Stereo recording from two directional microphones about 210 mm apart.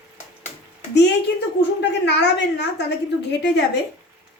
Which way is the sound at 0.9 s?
55° left (ahead or behind).